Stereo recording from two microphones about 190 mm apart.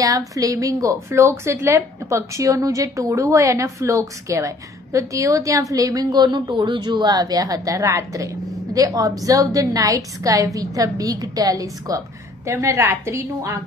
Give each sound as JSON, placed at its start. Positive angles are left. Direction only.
{"t": 0.3, "sound": "a woman's voice", "side_deg": -15}